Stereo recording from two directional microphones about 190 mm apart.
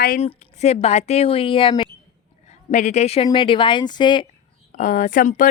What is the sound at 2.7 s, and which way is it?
A woman's voice, 40° left (ahead or behind).